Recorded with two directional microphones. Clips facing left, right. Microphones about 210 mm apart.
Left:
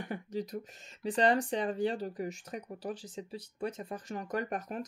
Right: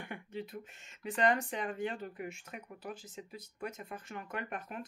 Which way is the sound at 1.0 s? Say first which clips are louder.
Left 3 dB; 35° left (ahead or behind).